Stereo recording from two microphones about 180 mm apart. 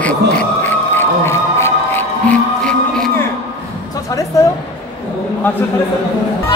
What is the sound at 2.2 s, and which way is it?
Music, 5° left (ahead or behind).